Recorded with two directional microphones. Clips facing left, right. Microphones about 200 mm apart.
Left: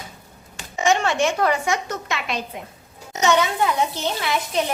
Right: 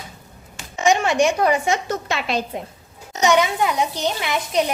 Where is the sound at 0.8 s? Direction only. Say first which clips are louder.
Right 3 dB; 15° right (ahead or behind); by 2.4 s 30° right (ahead or behind).